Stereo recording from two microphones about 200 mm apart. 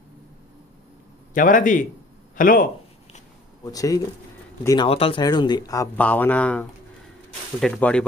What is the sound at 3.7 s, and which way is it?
Speech, 15° left (ahead or behind).